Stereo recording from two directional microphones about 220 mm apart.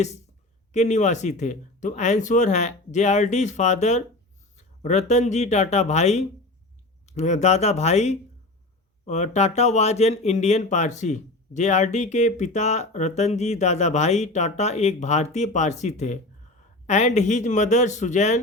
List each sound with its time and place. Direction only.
0.7 s speech: 30° left (ahead or behind)